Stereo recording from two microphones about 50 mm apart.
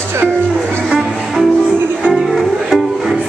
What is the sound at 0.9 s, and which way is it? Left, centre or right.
Music, centre.